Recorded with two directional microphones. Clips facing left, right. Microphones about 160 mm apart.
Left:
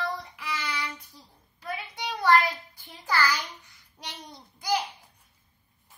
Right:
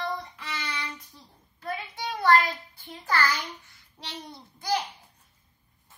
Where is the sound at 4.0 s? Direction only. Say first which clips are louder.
Right 2 dB; 15° left (ahead or behind).